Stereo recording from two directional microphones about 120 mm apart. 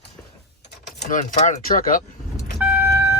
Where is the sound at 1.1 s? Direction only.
90° left.